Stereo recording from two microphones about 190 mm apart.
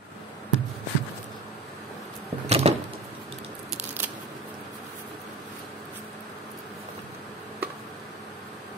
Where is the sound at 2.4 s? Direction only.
35° right (ahead or behind).